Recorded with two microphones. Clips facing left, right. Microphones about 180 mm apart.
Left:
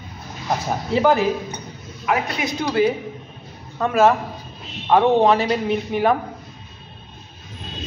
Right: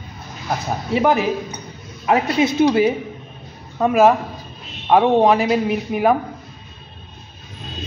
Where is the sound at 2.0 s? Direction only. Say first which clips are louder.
Right 6 dB; 25° right (ahead or behind).